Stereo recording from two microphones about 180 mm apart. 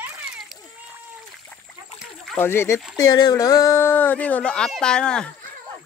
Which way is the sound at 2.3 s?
15° left (ahead or behind).